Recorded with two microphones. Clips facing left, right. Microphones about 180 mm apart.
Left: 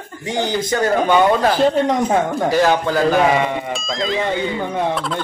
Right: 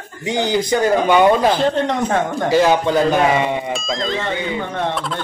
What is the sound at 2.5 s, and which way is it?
A man's voice, 20° right (ahead or behind).